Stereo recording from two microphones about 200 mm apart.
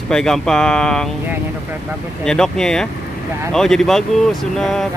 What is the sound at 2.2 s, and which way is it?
Speech, 5° left (ahead or behind).